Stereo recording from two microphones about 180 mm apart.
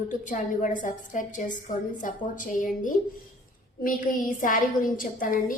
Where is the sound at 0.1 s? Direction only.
45° left (ahead or behind).